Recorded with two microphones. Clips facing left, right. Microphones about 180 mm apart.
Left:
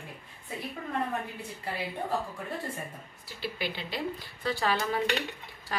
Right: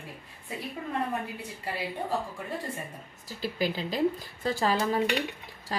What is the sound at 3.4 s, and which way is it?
A woman's voice, 40° right (ahead or behind).